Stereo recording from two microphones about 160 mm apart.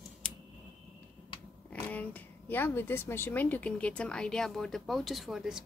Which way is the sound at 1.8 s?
10° left (ahead or behind).